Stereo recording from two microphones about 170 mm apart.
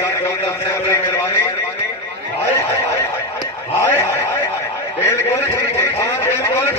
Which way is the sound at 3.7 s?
15° left (ahead or behind).